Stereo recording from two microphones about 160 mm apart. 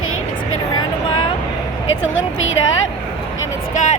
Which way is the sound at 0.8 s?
30° left (ahead or behind).